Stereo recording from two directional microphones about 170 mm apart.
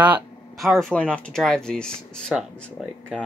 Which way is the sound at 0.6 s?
Centre (ahead or behind).